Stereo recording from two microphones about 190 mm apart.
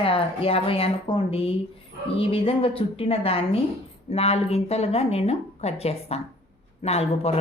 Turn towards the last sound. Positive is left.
turn(degrees=35)  # may be behind; listen again after turning